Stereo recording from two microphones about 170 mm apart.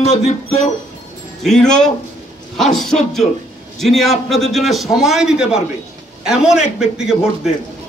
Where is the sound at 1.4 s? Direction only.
5° left (ahead or behind).